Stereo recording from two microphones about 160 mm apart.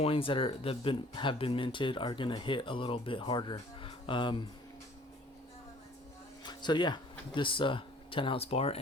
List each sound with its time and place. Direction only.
0.0 s speech: 35° left (ahead or behind)
6.4 s speech: 25° left (ahead or behind)